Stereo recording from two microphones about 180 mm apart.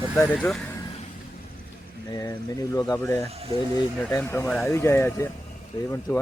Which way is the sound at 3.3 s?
35° right (ahead or behind).